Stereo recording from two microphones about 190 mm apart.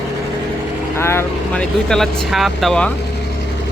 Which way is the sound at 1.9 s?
Centre (ahead or behind).